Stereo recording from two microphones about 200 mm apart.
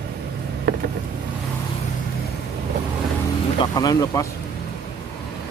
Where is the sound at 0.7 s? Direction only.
55° right (ahead or behind).